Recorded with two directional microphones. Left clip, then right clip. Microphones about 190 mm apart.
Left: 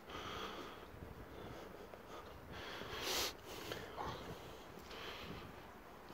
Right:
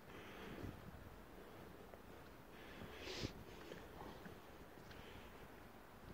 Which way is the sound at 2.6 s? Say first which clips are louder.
Left 9 dB; 30° left (ahead or behind).